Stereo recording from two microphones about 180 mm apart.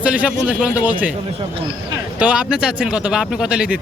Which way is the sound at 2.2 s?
5° right (ahead or behind).